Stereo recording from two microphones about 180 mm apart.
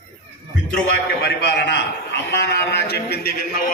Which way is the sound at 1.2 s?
65° left (ahead or behind).